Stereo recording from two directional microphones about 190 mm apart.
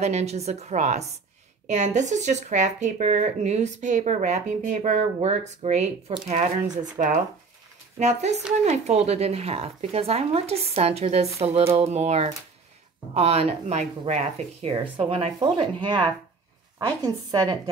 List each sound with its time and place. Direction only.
0.0 s speech: 35° right (ahead or behind)